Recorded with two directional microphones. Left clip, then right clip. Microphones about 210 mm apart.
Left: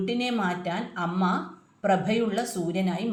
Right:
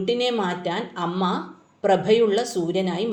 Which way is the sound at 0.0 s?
20° right (ahead or behind).